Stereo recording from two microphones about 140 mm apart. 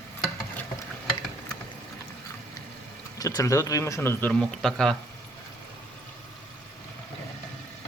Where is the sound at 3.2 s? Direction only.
25° left (ahead or behind).